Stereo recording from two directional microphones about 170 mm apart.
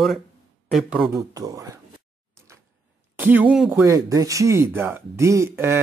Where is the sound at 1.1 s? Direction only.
20° right (ahead or behind).